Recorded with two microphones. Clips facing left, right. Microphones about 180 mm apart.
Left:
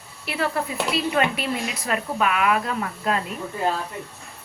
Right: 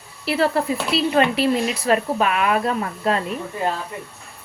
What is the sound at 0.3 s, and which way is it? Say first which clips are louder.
A woman's voice: right 6 dB; 35° right (ahead or behind).